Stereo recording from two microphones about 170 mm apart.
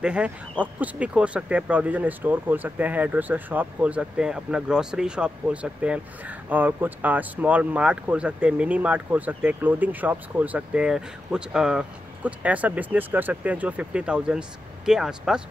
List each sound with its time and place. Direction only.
0.0 s speech: 5° right (ahead or behind)